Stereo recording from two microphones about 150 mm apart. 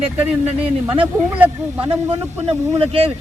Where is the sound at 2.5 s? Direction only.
40° right (ahead or behind).